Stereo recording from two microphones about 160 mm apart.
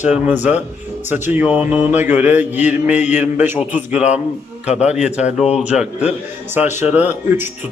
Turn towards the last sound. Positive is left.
turn(degrees=-10)  # may be behind; listen again after turning